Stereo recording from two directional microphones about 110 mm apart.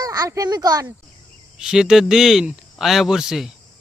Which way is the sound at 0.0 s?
35° right (ahead or behind).